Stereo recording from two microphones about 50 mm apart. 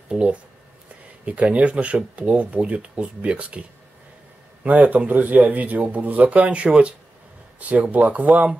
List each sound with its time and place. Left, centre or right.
0.1 s speech: right
4.6 s speech: right